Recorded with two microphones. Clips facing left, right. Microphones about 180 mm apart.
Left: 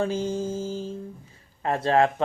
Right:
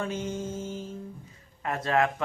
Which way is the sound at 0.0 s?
30° left (ahead or behind).